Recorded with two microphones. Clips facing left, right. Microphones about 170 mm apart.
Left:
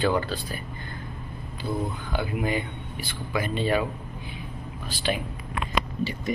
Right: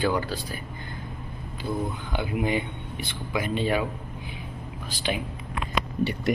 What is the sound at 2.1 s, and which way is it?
Speech, 20° right (ahead or behind).